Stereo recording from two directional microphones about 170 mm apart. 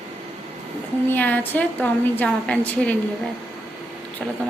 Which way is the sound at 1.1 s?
10° left (ahead or behind).